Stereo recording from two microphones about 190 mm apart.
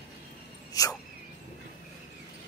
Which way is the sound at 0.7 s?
20° left (ahead or behind).